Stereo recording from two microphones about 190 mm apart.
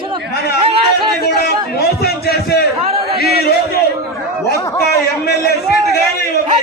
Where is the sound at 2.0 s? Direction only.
55° left (ahead or behind).